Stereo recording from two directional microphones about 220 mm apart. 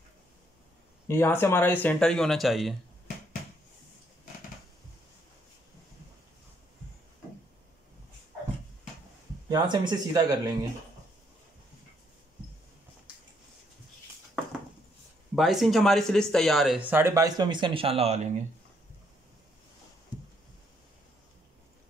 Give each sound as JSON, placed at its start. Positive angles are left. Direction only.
{"t": 1.0, "sound": "speech", "side_deg": 10}
{"t": 9.5, "sound": "speech", "side_deg": -20}
{"t": 15.3, "sound": "speech", "side_deg": 0}